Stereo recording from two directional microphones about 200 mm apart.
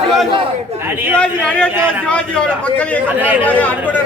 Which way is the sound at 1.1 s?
5° left (ahead or behind).